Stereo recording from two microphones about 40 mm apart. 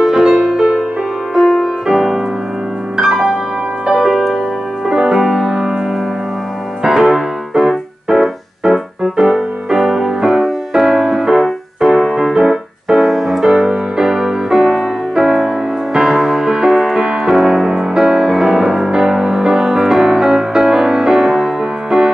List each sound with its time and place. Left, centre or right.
0.0 s music: centre
4.0 s music: centre
4.8 s music: centre
6.8 s music: centre
11.8 s music: centre
15.2 s music: centre